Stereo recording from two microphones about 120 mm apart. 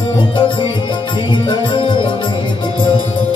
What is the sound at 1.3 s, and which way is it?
Music, 45° left (ahead or behind).